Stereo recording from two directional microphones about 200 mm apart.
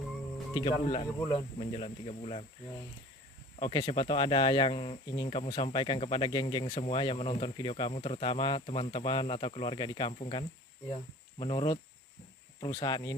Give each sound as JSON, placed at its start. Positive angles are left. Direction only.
{"t": 0.6, "sound": "speech", "side_deg": 25}
{"t": 3.5, "sound": "speech", "side_deg": 25}